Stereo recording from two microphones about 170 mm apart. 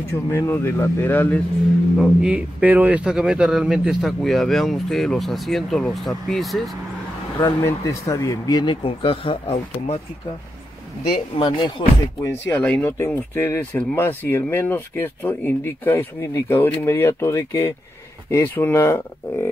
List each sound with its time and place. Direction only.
0.3 s speech: 15° left (ahead or behind)
2.0 s speech: 5° right (ahead or behind)
7.3 s speech: 20° left (ahead or behind)
11.1 s speech: 30° left (ahead or behind)
12.2 s speech: 15° left (ahead or behind)